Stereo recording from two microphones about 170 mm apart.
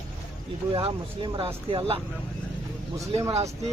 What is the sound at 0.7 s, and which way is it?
Speech, 30° right (ahead or behind).